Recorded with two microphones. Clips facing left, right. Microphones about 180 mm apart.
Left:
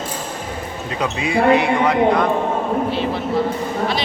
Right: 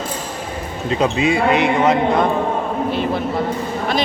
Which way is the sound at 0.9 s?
25° right (ahead or behind).